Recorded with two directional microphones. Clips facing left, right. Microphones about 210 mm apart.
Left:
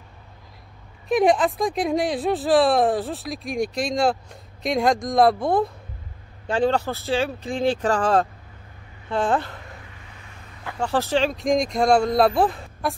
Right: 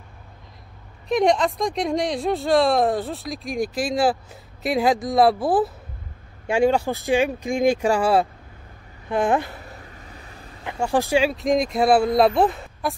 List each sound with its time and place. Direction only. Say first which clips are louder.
1.0 s speech: left 1 dB; 5° left (ahead or behind); by 9.6 s 15° right (ahead or behind)
9.8 s vehicle: right 3 dB; 40° right (ahead or behind)
10.6 s speech: right 2 dB; 15° right (ahead or behind); by 12.9 s centre (ahead or behind)